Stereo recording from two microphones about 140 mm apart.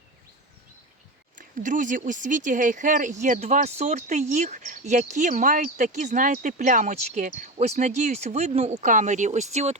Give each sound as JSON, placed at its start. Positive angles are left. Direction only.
{"t": 1.4, "sound": "speech", "side_deg": -65}